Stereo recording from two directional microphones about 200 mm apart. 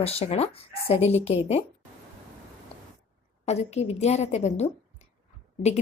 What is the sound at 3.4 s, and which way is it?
Speech, 35° left (ahead or behind).